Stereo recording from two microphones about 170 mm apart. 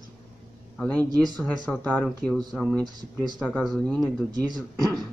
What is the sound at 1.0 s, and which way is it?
Speech, 25° right (ahead or behind).